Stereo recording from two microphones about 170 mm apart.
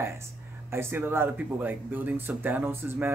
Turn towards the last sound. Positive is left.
turn(degrees=-15)  # may be behind; listen again after turning